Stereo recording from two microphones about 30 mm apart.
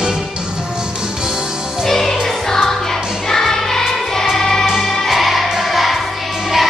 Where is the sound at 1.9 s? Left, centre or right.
Centre.